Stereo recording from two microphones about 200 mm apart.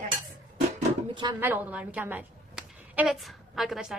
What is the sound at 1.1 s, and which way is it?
Speech, 20° right (ahead or behind).